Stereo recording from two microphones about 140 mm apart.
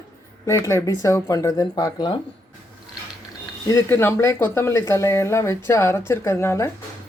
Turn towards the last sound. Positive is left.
turn(degrees=20)  # may be behind; listen again after turning